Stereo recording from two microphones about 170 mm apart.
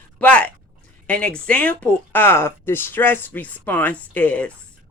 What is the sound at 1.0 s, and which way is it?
Speech, 5° left (ahead or behind).